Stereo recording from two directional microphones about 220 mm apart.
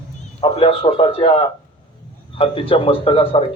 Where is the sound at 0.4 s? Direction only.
25° left (ahead or behind).